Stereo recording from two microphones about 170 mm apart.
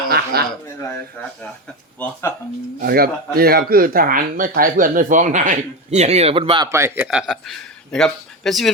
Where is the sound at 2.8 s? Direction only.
60° right (ahead or behind); by 7.0 s 15° right (ahead or behind).